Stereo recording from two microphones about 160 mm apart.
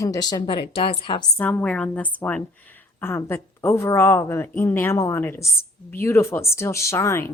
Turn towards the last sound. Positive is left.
turn(degrees=15)  # may be behind; listen again after turning